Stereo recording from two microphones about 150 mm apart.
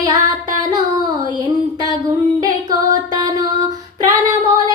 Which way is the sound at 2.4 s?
25° right (ahead or behind).